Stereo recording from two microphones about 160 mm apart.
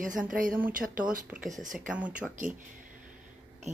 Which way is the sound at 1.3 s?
5° right (ahead or behind).